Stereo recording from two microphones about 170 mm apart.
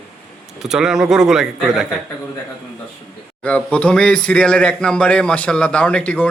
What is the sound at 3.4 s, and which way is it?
Speech, 10° left (ahead or behind).